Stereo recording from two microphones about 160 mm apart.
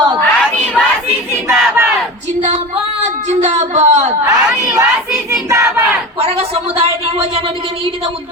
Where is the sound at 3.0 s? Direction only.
50° right (ahead or behind).